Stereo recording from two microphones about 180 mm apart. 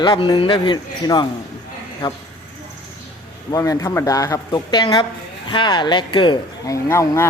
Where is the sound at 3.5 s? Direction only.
20° left (ahead or behind).